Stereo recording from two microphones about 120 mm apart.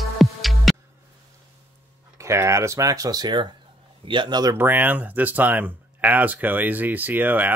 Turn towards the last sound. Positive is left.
turn(degrees=-15)  # may be behind; listen again after turning